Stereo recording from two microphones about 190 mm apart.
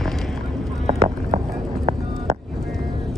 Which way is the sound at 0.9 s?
35° right (ahead or behind).